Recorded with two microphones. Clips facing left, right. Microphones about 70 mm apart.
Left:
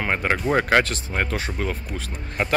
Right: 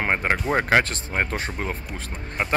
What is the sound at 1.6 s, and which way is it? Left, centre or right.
Speech, right.